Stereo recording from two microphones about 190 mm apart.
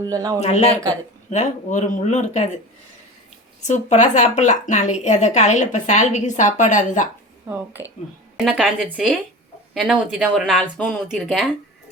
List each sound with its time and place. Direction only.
0.0 s speech: 20° right (ahead or behind)
0.3 s speech: 35° left (ahead or behind)
3.6 s speech: 40° left (ahead or behind)
7.5 s speech: 10° right (ahead or behind)